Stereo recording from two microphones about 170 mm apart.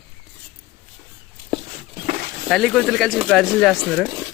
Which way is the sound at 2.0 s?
55° right (ahead or behind).